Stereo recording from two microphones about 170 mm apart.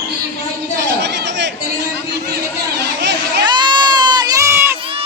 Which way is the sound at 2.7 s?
85° right.